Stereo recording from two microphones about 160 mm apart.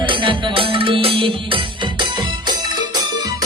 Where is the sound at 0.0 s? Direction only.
30° right (ahead or behind).